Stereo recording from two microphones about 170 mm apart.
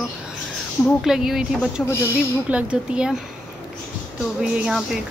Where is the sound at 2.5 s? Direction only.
5° right (ahead or behind).